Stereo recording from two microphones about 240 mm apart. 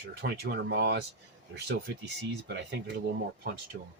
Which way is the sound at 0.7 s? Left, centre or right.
Right.